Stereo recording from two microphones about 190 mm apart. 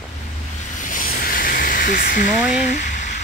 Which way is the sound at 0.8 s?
45° left (ahead or behind).